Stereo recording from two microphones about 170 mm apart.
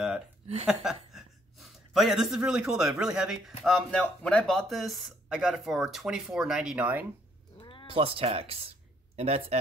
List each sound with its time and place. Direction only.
0.7 s a woman's voice: 5° right (ahead or behind)
7.5 s cat: 30° left (ahead or behind)
7.8 s speech: 35° right (ahead or behind)